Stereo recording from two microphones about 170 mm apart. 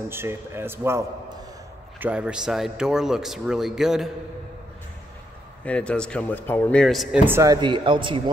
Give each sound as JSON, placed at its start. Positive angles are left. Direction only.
{"t": 0.1, "sound": "a man's voice", "side_deg": -15}
{"t": 5.7, "sound": "speech", "side_deg": 5}
{"t": 7.2, "sound": "a man's voice", "side_deg": -15}
{"t": 7.6, "sound": "a man's voice", "side_deg": -30}